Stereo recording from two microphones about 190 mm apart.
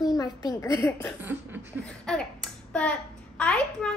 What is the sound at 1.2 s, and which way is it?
Speech, 10° right (ahead or behind).